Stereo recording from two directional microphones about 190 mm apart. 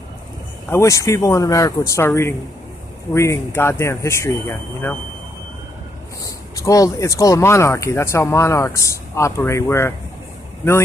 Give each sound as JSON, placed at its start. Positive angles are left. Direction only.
{"t": 0.7, "sound": "speech", "side_deg": 15}
{"t": 6.2, "sound": "speech", "side_deg": 15}